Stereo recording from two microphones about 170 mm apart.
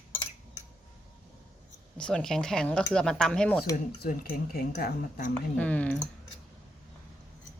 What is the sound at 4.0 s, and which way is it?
Speech, 60° left (ahead or behind).